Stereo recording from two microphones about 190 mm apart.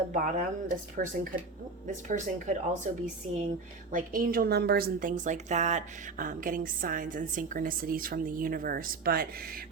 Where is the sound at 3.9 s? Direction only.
45° right (ahead or behind).